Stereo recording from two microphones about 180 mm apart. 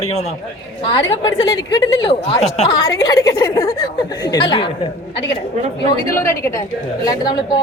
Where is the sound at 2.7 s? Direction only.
20° left (ahead or behind).